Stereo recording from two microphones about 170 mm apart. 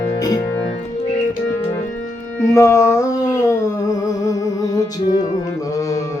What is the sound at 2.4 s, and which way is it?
Humming, 15° left (ahead or behind).